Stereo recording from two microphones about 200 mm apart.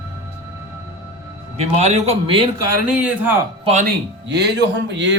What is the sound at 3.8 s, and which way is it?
Speech, 55° right (ahead or behind).